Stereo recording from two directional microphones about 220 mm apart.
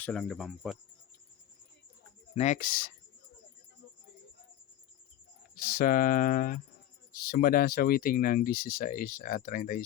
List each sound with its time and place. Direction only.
0.0 s speech: 5° left (ahead or behind)
2.3 s speech: 30° left (ahead or behind)
5.5 s speech: 40° left (ahead or behind)